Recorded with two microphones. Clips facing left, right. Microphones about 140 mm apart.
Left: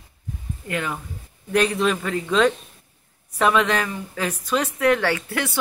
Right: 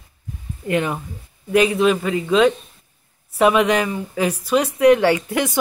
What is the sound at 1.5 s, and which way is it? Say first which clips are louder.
A man's voice: right 5 dB; 5° right (ahead or behind).